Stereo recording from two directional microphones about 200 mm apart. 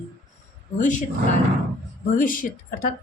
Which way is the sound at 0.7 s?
40° left (ahead or behind).